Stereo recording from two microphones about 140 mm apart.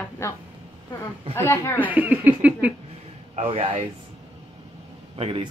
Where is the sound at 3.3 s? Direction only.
40° right (ahead or behind).